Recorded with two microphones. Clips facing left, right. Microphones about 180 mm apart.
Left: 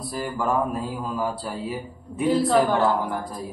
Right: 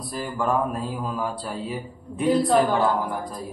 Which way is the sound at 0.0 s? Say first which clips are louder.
Even; centre (ahead or behind).